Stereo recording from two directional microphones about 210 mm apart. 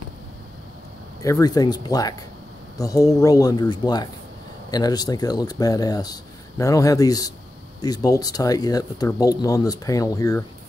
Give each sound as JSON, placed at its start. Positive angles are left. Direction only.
{"t": 1.2, "sound": "speech", "side_deg": 15}